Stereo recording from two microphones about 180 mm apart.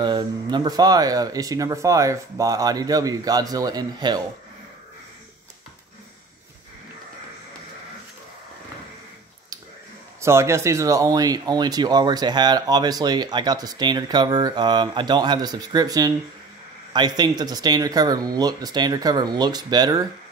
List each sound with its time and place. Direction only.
0.0 s speech: 25° right (ahead or behind)
10.2 s speech: 15° right (ahead or behind)